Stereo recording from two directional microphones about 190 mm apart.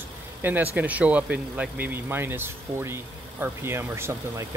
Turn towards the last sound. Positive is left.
turn(degrees=-15)  # may be behind; listen again after turning